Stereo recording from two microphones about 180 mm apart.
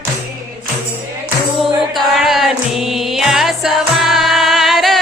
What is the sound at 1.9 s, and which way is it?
Music, centre (ahead or behind).